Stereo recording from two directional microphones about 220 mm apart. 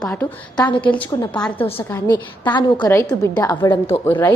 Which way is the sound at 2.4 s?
20° left (ahead or behind).